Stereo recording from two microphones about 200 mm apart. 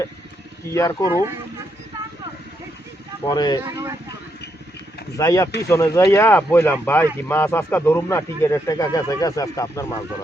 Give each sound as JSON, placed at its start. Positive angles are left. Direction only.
{"t": 0.7, "sound": "speech", "side_deg": 15}
{"t": 3.2, "sound": "speech", "side_deg": 20}
{"t": 3.6, "sound": "speech", "side_deg": -15}
{"t": 5.1, "sound": "speech", "side_deg": 15}